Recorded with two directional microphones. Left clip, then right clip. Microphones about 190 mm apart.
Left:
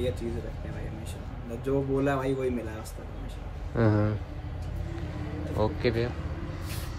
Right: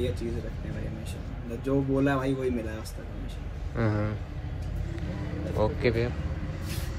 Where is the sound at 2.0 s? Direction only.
Centre (ahead or behind).